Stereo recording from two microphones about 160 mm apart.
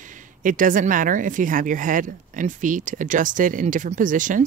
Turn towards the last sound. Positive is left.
turn(degrees=-55)  # may be behind; listen again after turning